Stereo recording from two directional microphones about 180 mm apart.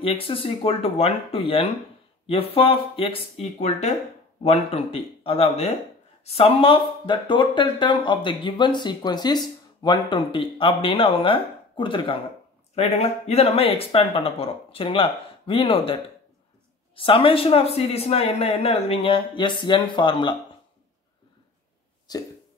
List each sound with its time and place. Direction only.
0.0 s a man's voice: 30° left (ahead or behind)
22.1 s speech: 20° left (ahead or behind)